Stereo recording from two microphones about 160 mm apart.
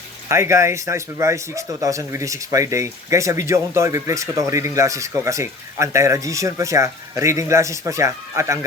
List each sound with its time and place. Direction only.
0.3 s speech: 15° right (ahead or behind)